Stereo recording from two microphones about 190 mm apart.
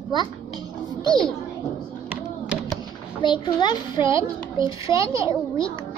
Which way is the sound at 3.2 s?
25° left (ahead or behind).